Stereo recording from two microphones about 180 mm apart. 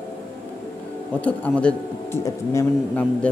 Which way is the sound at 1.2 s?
5° left (ahead or behind).